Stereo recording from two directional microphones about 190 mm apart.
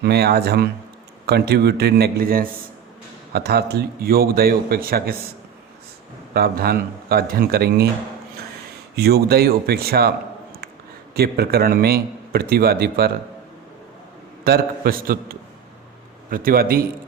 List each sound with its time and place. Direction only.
0.0 s a man's voice: 60° right (ahead or behind)
6.3 s a man's voice: 55° right (ahead or behind)
9.0 s a man's voice: 55° right (ahead or behind)
11.1 s a man's voice: 55° right (ahead or behind)
14.4 s a man's voice: 50° right (ahead or behind)